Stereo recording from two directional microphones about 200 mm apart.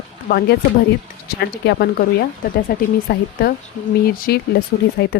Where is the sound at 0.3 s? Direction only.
50° left (ahead or behind).